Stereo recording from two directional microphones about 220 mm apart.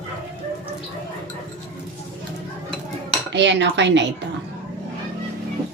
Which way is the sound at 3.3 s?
55° right (ahead or behind).